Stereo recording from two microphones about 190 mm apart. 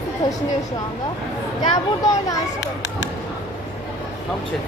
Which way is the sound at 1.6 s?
25° left (ahead or behind).